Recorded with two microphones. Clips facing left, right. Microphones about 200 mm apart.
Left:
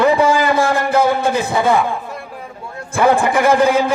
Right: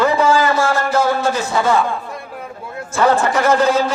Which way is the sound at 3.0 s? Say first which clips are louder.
Left 1 dB; 15° left (ahead or behind).